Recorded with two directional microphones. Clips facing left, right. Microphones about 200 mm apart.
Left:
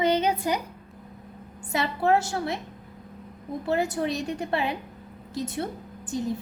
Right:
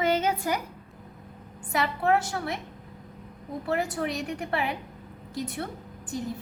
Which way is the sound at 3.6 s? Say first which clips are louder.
Left 3 dB; 25° left (ahead or behind).